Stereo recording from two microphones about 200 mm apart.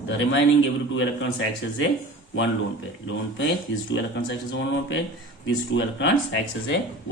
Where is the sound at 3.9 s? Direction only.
65° left (ahead or behind).